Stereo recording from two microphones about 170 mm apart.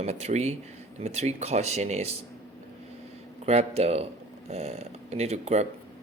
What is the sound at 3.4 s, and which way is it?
Speech, 35° right (ahead or behind).